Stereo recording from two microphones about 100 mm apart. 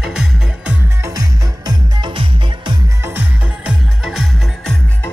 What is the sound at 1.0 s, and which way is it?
Music, 35° right (ahead or behind).